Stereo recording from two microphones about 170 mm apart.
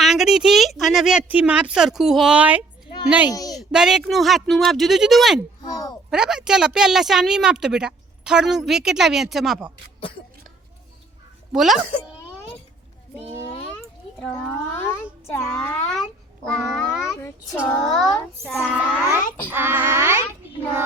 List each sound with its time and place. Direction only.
0.0 s a woman's voice: centre (ahead or behind)
3.1 s child singing: 5° right (ahead or behind)
3.5 s a woman's voice: centre (ahead or behind)
5.6 s speech: 20° left (ahead or behind)
6.1 s a woman's voice: 5° right (ahead or behind)
11.5 s a woman's voice: centre (ahead or behind)
14.2 s a child's voice: 10° left (ahead or behind)
17.2 s a child's voice: 15° left (ahead or behind)
17.8 s a woman's voice: centre (ahead or behind)
19.5 s child singing: 15° right (ahead or behind)